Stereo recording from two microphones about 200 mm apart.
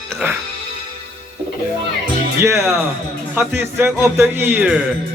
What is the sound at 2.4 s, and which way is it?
A man's voice, 10° right (ahead or behind).